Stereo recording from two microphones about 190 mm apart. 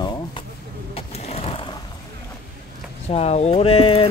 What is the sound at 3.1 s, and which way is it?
Speech, 35° left (ahead or behind).